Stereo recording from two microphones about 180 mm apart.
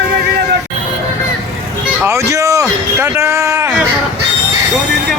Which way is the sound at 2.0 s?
15° right (ahead or behind).